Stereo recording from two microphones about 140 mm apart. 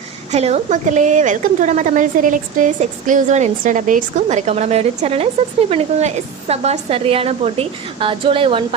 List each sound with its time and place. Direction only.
0.3 s a woman's voice: 50° right (ahead or behind)